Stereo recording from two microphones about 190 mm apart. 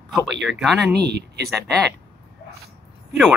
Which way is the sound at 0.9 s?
60° right (ahead or behind).